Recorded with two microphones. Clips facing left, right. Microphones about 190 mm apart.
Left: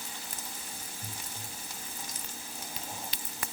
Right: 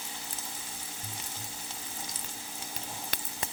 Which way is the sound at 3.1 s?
50° right (ahead or behind).